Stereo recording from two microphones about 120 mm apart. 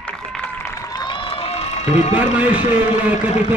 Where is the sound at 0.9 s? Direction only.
40° left (ahead or behind); by 2.1 s 70° left (ahead or behind).